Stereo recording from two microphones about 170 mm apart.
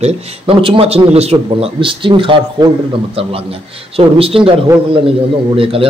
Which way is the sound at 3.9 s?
35° right (ahead or behind).